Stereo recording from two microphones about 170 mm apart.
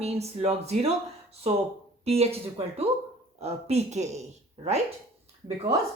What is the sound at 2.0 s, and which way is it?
Speech, 35° right (ahead or behind).